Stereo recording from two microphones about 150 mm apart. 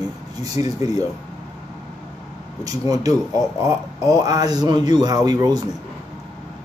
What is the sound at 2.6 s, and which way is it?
Speech, 25° right (ahead or behind).